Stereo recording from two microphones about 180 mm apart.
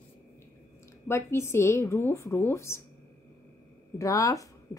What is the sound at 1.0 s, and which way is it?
A woman's voice, 15° left (ahead or behind).